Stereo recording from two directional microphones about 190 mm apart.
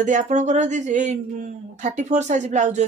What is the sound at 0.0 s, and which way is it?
Speech, 40° right (ahead or behind).